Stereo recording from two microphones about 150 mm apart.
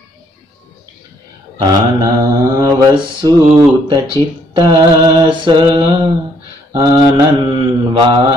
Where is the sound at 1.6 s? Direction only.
25° right (ahead or behind).